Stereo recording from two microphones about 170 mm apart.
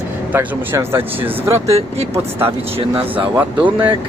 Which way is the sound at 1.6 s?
35° right (ahead or behind).